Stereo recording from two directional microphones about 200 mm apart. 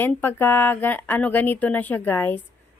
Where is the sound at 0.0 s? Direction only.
10° left (ahead or behind).